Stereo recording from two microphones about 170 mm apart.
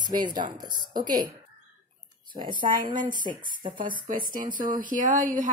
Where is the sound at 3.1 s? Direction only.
50° right (ahead or behind).